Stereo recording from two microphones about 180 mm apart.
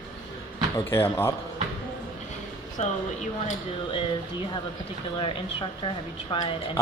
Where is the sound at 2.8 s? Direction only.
40° left (ahead or behind).